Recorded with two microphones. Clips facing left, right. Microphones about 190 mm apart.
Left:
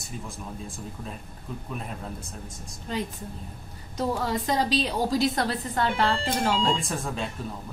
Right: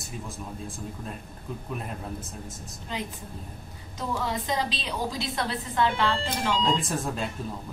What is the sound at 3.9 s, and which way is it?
A woman's voice, 45° left (ahead or behind).